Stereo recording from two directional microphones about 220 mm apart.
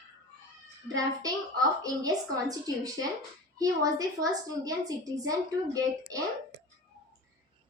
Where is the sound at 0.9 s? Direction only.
15° right (ahead or behind).